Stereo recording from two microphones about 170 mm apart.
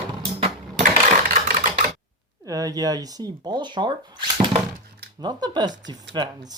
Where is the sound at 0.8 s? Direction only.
55° right (ahead or behind).